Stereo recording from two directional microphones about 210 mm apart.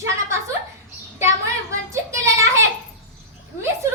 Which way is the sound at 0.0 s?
15° right (ahead or behind).